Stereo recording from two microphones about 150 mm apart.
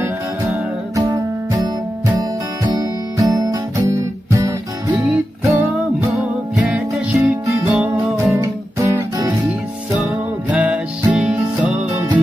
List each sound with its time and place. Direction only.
0.0 s music: 20° right (ahead or behind)
10.0 s music: 10° right (ahead or behind)